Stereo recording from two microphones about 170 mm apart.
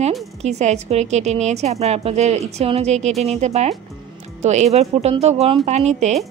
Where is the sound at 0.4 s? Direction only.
40° right (ahead or behind).